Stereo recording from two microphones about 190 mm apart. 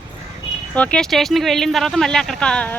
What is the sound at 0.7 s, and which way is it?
Speech, 5° left (ahead or behind).